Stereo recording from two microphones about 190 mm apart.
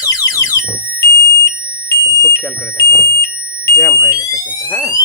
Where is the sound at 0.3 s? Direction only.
15° left (ahead or behind).